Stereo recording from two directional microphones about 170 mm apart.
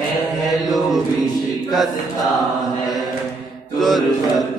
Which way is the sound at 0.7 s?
Centre (ahead or behind).